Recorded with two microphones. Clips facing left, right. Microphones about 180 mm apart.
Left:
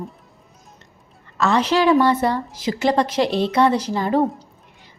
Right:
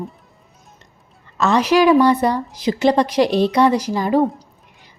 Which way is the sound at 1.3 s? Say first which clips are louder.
Right 3 dB; 15° right (ahead or behind).